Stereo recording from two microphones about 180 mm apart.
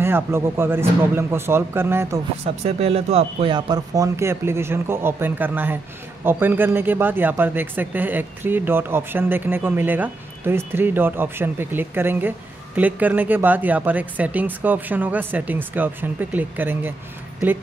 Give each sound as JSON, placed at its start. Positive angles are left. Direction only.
{"t": 0.0, "sound": "speech", "side_deg": -15}
{"t": 2.4, "sound": "speech", "side_deg": -35}